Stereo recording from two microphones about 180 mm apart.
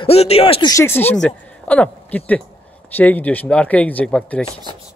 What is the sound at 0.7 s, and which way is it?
A woman's voice, 15° left (ahead or behind).